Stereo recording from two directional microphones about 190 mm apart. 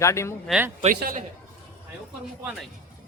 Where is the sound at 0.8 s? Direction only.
45° right (ahead or behind).